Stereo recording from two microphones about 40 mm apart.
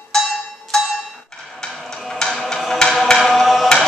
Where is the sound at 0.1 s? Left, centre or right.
Centre.